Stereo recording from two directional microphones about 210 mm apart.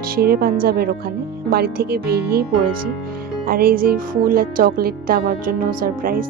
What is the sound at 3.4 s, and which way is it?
Speech, 45° right (ahead or behind).